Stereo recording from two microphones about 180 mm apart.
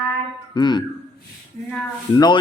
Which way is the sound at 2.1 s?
25° left (ahead or behind).